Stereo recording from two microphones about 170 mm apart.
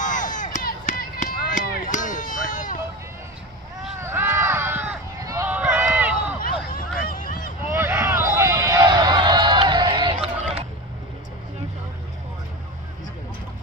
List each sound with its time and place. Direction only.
0.0 s a sound: 50° left (ahead or behind)
4.0 s run: 15° right (ahead or behind)
6.7 s hubbub: 55° left (ahead or behind)
7.7 s run: 15° right (ahead or behind)